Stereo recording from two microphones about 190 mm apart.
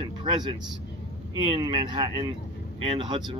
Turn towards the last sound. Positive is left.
turn(degrees=-25)  # may be behind; listen again after turning